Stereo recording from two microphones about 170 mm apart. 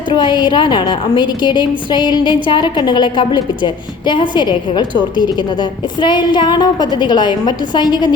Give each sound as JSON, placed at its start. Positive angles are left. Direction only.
{"t": 0.1, "sound": "a woman's voice", "side_deg": 25}